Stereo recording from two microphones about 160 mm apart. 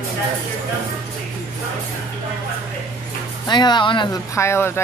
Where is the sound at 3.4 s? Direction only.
30° left (ahead or behind).